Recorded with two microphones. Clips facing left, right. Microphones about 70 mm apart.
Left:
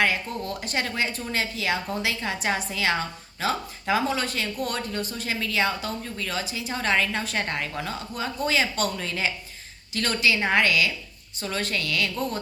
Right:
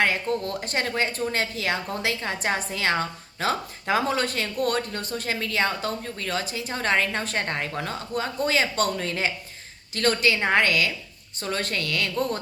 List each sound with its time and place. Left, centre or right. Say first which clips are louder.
0.3 s speech: right 4 dB; right